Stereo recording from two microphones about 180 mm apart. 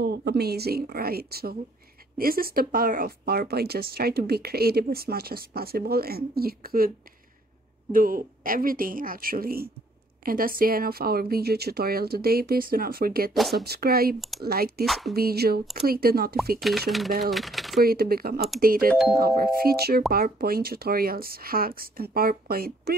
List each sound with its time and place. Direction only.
0.0 s speech: 65° right (ahead or behind)
7.9 s speech: 55° right (ahead or behind)
14.9 s speech: centre (ahead or behind)
15.1 s speech: 60° right (ahead or behind)
16.6 s speech: centre (ahead or behind)
17.7 s speech: 60° right (ahead or behind)
18.9 s speech: centre (ahead or behind)
19.1 s speech: 55° right (ahead or behind)